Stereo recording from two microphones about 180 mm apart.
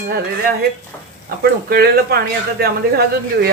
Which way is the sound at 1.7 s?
60° right (ahead or behind).